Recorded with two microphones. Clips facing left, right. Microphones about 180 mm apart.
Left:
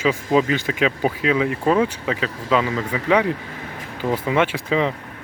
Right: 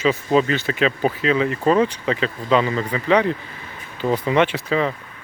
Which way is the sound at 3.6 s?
75° left (ahead or behind).